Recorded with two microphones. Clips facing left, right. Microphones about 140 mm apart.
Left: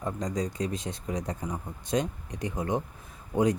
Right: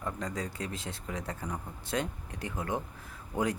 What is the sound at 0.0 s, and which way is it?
Speech, 20° left (ahead or behind).